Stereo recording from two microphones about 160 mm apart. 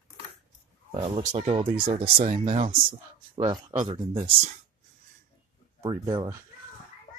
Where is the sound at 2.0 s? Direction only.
55° right (ahead or behind).